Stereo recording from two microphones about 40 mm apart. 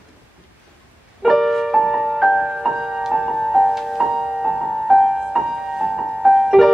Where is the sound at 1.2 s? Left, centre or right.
Centre.